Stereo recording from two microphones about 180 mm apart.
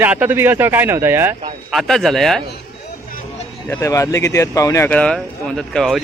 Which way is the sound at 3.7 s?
15° left (ahead or behind).